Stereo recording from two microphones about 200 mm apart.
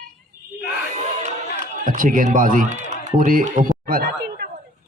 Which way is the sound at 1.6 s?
40° right (ahead or behind).